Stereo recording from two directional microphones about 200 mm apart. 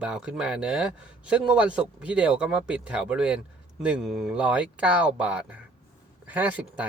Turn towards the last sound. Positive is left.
turn(degrees=-5)  # may be behind; listen again after turning